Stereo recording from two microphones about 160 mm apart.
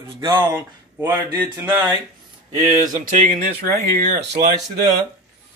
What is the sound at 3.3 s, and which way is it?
Speech, 70° right (ahead or behind).